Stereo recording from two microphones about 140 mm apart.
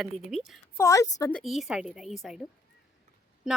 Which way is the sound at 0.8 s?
20° left (ahead or behind).